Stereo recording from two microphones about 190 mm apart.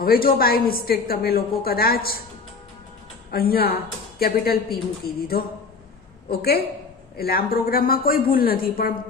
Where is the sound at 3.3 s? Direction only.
55° left (ahead or behind).